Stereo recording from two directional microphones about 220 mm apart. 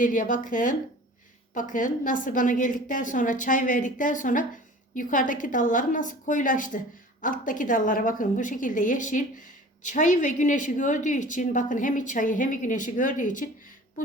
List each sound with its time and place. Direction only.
0.0 s a woman's voice: 35° left (ahead or behind)